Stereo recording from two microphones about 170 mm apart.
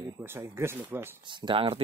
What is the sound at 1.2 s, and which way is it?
Speech, 30° right (ahead or behind).